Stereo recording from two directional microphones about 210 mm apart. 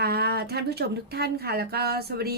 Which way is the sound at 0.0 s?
50° right (ahead or behind).